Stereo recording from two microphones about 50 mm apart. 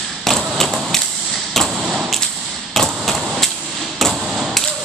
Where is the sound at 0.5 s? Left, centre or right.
Centre.